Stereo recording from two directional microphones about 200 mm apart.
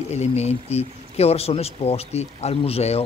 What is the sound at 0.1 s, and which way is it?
Speech, 35° left (ahead or behind).